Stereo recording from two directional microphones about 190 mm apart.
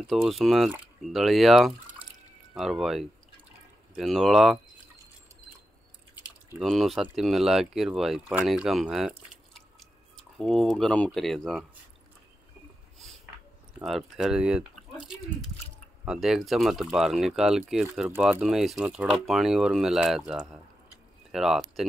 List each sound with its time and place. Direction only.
0.0 s speech: centre (ahead or behind)
6.2 s speech: centre (ahead or behind)
13.7 s speech: centre (ahead or behind)
16.1 s speech: centre (ahead or behind)